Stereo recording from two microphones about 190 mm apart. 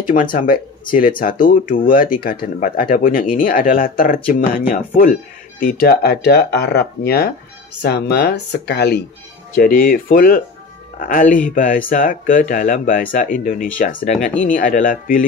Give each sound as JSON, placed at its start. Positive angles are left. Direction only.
{"t": 0.0, "sound": "speech", "side_deg": 45}